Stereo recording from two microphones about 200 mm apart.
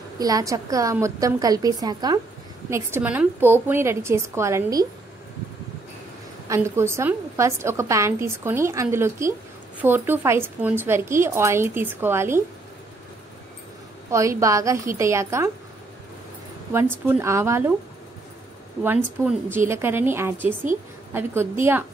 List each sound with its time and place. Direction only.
0.2 s a woman's voice: 15° right (ahead or behind)
6.5 s a woman's voice: 15° right (ahead or behind)
14.1 s a woman's voice: 15° right (ahead or behind)
16.7 s a woman's voice: 10° right (ahead or behind)
18.8 s a woman's voice: 10° right (ahead or behind)